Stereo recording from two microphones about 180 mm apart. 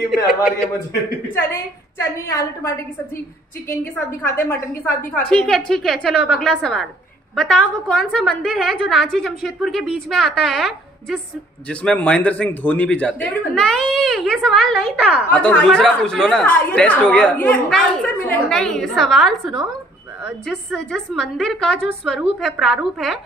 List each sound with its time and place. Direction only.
1.3 s a woman's voice: 15° left (ahead or behind)
4.2 s speech: 10° left (ahead or behind)